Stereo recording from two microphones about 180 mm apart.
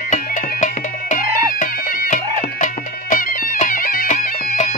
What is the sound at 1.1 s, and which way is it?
Music, 50° left (ahead or behind).